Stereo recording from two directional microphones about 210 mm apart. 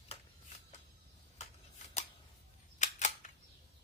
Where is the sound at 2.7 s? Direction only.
35° left (ahead or behind).